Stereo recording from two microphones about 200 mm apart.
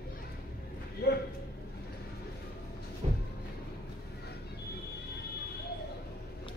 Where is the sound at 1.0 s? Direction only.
50° left (ahead or behind).